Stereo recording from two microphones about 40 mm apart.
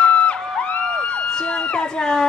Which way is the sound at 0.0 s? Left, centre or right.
Left.